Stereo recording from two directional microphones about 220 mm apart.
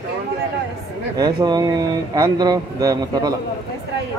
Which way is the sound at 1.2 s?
20° right (ahead or behind).